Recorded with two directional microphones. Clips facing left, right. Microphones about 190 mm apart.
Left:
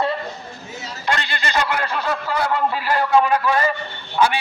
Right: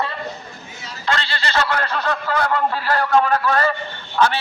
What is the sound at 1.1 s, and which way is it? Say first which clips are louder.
A man's voice: even; 15° left (ahead or behind).